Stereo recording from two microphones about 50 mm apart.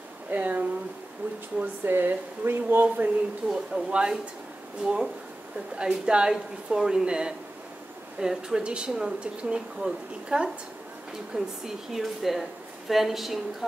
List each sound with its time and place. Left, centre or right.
0.3 s speech: right
3.5 s a woman's voice: centre